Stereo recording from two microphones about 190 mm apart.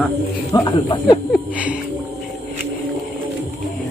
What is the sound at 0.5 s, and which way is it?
Speech, 20° left (ahead or behind).